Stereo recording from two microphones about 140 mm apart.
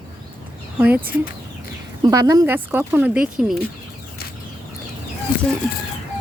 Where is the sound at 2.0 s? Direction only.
25° right (ahead or behind).